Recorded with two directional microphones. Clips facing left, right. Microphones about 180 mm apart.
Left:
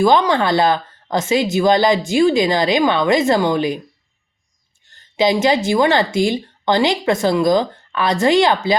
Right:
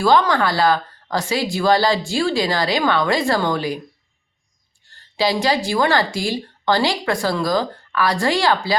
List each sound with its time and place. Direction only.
0.0 s speech: 20° left (ahead or behind)
4.9 s speech: 20° left (ahead or behind)